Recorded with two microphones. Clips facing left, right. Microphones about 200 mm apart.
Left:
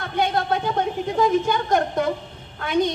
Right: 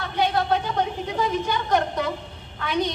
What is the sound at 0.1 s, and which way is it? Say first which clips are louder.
A woman's voice: even; 50° left (ahead or behind).